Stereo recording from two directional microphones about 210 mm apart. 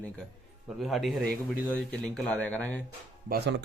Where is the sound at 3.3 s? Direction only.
55° right (ahead or behind).